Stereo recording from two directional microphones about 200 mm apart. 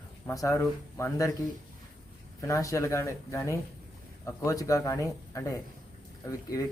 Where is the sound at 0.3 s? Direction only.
15° left (ahead or behind).